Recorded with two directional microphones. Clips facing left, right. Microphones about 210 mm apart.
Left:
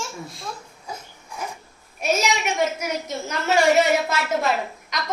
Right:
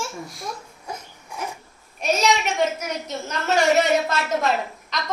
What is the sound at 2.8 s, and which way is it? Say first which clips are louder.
Speech: left 2 dB; 10° left (ahead or behind).